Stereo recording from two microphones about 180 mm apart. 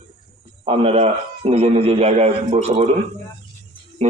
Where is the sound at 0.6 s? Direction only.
30° right (ahead or behind).